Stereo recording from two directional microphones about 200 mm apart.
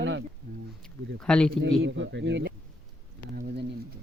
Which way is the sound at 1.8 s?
70° right (ahead or behind).